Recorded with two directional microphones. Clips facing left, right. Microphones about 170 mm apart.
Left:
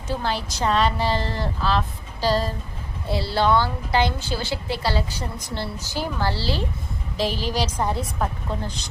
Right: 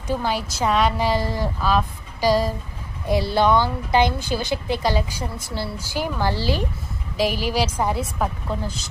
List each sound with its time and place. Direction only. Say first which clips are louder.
0.1 s a woman's voice: right 2 dB; 10° right (ahead or behind)